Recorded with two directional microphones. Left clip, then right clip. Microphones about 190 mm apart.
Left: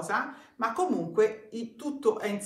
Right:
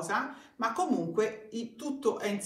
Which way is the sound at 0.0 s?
15° left (ahead or behind).